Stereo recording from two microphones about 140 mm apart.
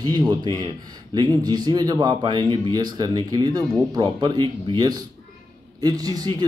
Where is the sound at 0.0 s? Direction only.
30° right (ahead or behind).